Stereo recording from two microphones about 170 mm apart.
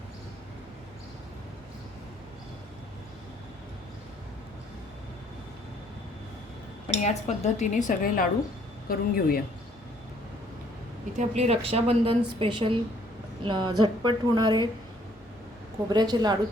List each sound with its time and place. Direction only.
6.9 s speech: 40° left (ahead or behind); by 9.4 s 60° left (ahead or behind)
11.2 s a woman's voice: 40° right (ahead or behind)
15.9 s a woman's voice: 25° right (ahead or behind)